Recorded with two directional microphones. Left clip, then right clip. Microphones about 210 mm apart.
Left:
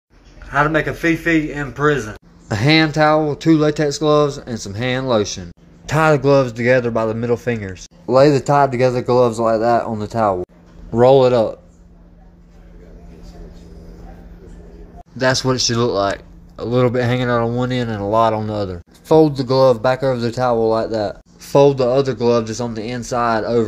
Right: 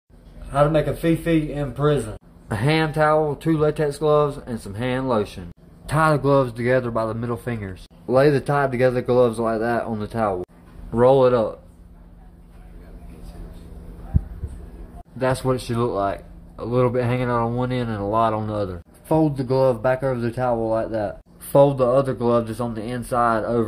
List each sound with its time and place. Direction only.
0.5 s speech: centre (ahead or behind)
2.4 s speech: 20° left (ahead or behind)
15.1 s speech: 15° left (ahead or behind)